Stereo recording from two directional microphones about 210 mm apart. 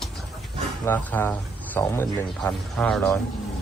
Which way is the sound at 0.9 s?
10° left (ahead or behind).